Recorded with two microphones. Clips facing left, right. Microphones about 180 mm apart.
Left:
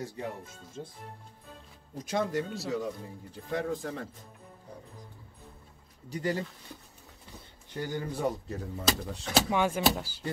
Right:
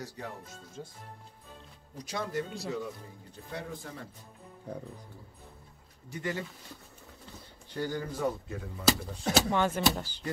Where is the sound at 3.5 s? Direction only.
90° left.